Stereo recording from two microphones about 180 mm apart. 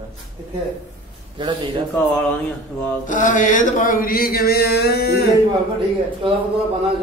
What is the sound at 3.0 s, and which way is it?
A man's voice, 45° left (ahead or behind).